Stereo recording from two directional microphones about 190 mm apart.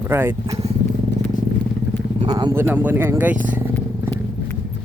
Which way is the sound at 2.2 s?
20° right (ahead or behind).